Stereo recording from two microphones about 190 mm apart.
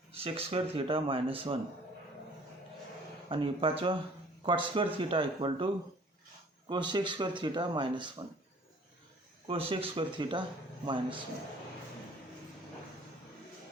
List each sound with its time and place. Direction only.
0.1 s speech: 30° right (ahead or behind)
3.2 s speech: 30° right (ahead or behind)
9.5 s speech: 30° right (ahead or behind)